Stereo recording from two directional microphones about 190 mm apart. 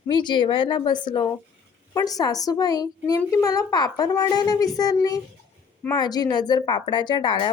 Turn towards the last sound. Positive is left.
turn(degrees=25)  # may be behind; listen again after turning